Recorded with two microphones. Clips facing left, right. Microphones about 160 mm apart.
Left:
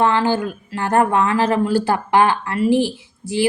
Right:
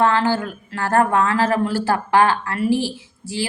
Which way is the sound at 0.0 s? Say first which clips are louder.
Left 1 dB; 15° left (ahead or behind).